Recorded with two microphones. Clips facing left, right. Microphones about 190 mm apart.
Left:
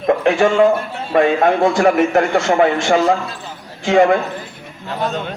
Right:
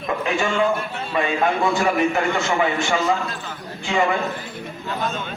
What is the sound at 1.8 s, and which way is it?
Speech, 55° left (ahead or behind).